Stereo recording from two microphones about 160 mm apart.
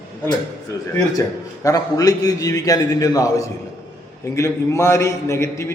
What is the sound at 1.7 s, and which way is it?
A man's voice, 25° left (ahead or behind).